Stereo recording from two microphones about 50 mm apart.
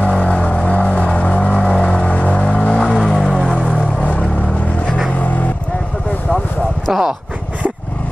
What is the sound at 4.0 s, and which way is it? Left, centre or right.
Vehicle, left.